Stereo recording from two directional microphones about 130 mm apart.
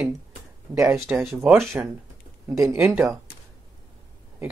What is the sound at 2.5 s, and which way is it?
Speech, 25° right (ahead or behind).